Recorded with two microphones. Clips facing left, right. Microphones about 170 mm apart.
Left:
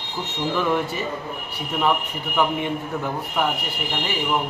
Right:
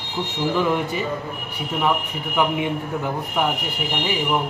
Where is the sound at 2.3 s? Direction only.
10° right (ahead or behind).